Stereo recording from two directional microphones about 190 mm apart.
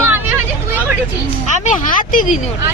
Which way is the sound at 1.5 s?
40° left (ahead or behind).